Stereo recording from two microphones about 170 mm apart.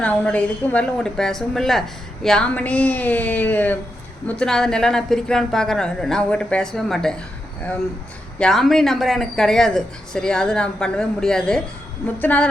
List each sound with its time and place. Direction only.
0.0 s speech: 10° left (ahead or behind)
8.4 s speech: centre (ahead or behind)